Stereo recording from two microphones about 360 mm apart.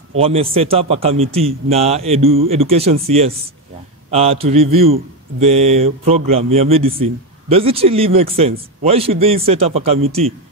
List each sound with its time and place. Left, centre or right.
0.2 s a man's voice: centre